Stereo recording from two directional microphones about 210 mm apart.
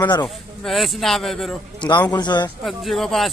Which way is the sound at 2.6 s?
Centre (ahead or behind).